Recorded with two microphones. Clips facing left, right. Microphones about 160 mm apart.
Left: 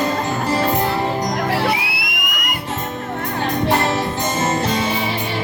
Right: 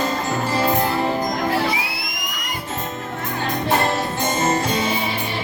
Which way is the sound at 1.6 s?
65° left (ahead or behind).